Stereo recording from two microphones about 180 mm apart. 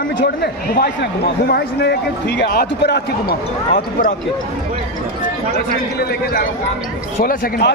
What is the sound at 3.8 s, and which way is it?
Speech, 55° left (ahead or behind).